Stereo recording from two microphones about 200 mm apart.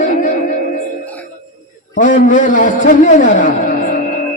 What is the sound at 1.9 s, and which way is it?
Speech, 40° left (ahead or behind).